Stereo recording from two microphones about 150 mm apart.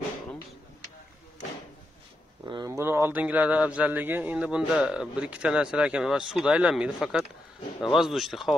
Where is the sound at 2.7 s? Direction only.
15° right (ahead or behind).